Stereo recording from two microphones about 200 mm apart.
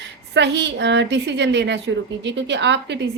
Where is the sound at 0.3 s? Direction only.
60° right (ahead or behind).